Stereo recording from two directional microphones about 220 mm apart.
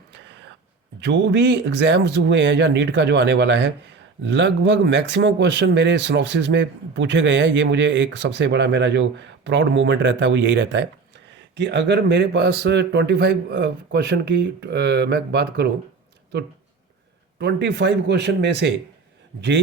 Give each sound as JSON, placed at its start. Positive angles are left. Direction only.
{"t": 0.1, "sound": "a sound", "side_deg": -55}
{"t": 1.0, "sound": "speech", "side_deg": -55}
{"t": 17.3, "sound": "speech", "side_deg": -50}